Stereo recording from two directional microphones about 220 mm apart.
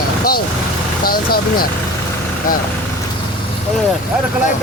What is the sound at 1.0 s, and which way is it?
Speech, 40° left (ahead or behind).